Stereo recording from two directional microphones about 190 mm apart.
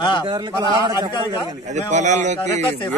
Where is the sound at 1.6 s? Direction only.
40° right (ahead or behind).